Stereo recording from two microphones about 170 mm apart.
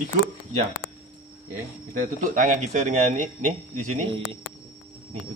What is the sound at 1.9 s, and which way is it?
Speech, 50° right (ahead or behind).